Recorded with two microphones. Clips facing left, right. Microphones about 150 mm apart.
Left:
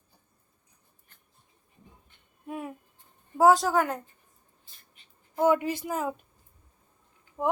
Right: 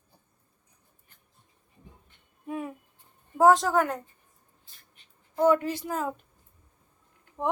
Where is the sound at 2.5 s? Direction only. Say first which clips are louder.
Right 2 dB; 5° left (ahead or behind).